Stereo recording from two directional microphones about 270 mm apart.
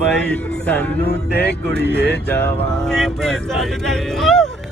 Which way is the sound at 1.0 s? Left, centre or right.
Left.